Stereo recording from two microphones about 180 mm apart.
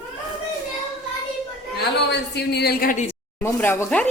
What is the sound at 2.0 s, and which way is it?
Speech, 65° left (ahead or behind).